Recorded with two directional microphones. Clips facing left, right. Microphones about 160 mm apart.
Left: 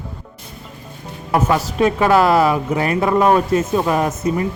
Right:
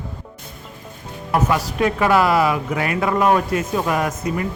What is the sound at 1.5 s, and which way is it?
Speech, 25° left (ahead or behind).